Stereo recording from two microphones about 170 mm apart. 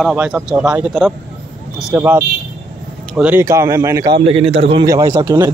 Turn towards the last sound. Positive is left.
turn(degrees=-20)  # may be behind; listen again after turning